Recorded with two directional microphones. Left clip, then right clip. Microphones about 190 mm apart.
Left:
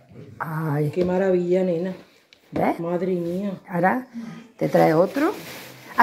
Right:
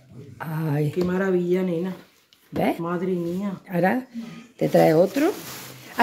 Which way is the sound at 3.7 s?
35° right (ahead or behind).